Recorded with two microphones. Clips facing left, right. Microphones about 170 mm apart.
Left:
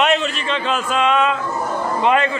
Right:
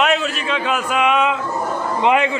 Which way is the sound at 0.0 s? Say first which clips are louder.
Even; centre (ahead or behind).